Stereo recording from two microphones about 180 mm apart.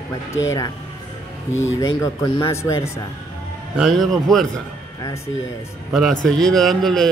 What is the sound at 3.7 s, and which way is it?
Speech, centre (ahead or behind).